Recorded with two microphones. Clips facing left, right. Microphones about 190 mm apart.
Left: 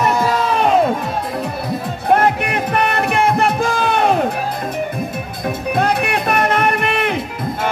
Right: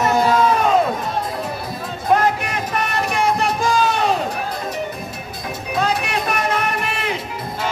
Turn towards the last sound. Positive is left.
turn(degrees=60)  # may be behind; listen again after turning